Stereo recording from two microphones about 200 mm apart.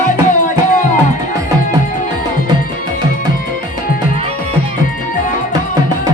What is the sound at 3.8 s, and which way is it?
Music, 45° left (ahead or behind).